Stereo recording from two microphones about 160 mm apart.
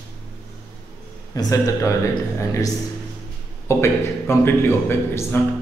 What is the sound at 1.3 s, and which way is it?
Speech, 20° left (ahead or behind).